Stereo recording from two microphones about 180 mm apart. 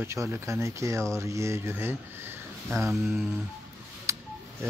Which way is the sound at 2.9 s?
Centre (ahead or behind).